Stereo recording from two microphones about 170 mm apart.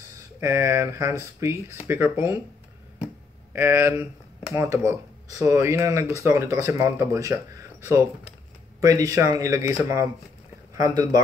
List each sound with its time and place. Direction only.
0.4 s speech: 15° right (ahead or behind)
3.5 s speech: 15° right (ahead or behind)